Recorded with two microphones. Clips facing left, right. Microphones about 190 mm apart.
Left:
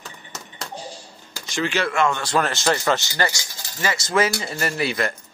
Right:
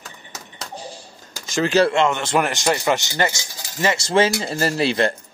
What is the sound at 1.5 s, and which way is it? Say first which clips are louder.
Speech: right 7 dB; 40° right (ahead or behind).